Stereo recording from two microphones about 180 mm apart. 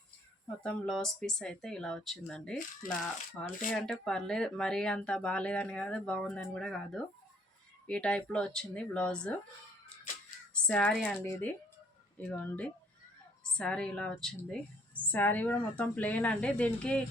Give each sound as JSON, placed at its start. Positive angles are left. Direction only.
{"t": 0.6, "sound": "speech", "side_deg": 5}
{"t": 10.5, "sound": "speech", "side_deg": 5}
{"t": 11.2, "sound": "a woman's voice", "side_deg": 15}